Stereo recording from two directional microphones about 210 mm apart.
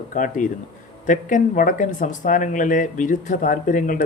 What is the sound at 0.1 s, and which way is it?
Speech, 40° left (ahead or behind).